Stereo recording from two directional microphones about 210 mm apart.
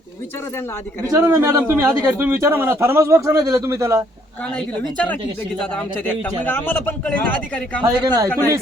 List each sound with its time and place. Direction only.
1.1 s a man's voice: 10° right (ahead or behind)
4.5 s speech: 5° left (ahead or behind)
8.0 s a man's voice: 20° right (ahead or behind)